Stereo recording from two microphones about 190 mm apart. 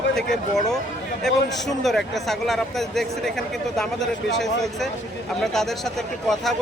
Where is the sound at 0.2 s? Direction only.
Centre (ahead or behind).